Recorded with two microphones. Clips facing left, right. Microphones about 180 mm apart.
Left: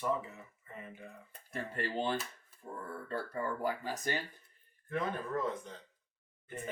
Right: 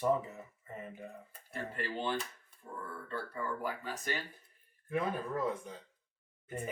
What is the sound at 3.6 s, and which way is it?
Speech, 40° left (ahead or behind).